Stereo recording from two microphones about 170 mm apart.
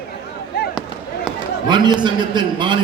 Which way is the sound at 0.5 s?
70° left (ahead or behind).